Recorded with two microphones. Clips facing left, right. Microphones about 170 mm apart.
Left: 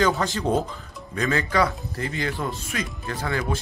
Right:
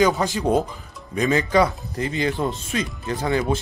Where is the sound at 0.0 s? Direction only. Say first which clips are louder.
Right 3 dB; 15° right (ahead or behind).